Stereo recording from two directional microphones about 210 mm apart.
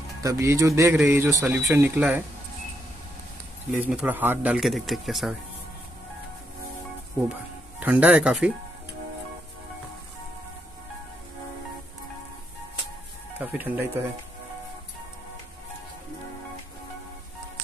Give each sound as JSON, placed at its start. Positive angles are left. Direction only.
{"t": 0.2, "sound": "speech", "side_deg": -15}
{"t": 3.7, "sound": "speech", "side_deg": -5}
{"t": 7.8, "sound": "speech", "side_deg": -10}
{"t": 13.4, "sound": "speech", "side_deg": -10}